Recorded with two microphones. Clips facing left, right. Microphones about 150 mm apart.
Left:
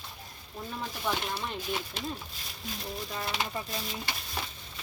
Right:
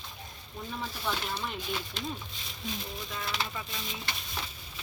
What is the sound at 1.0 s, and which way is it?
Speech, 10° left (ahead or behind).